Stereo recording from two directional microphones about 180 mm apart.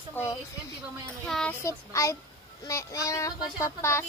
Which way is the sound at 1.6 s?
15° left (ahead or behind).